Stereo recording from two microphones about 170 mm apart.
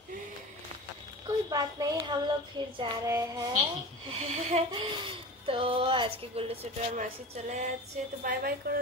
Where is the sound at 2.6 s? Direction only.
25° right (ahead or behind).